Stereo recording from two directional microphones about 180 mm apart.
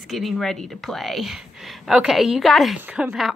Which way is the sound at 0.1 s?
Centre (ahead or behind).